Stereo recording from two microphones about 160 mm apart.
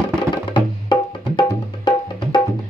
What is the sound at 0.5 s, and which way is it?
Music, 30° left (ahead or behind).